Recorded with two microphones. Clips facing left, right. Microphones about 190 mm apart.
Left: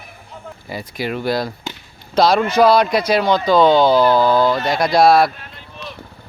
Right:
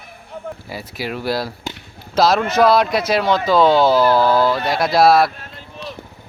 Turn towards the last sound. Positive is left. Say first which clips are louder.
# left 1 dB
turn(degrees=0)  # may be behind; listen again after turning